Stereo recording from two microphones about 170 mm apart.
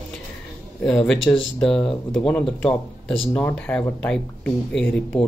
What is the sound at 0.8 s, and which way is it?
Speech, 5° left (ahead or behind).